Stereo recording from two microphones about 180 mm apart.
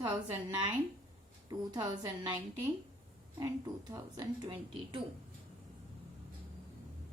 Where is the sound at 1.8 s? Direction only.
25° right (ahead or behind).